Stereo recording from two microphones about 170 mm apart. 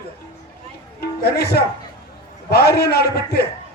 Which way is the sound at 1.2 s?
70° left (ahead or behind).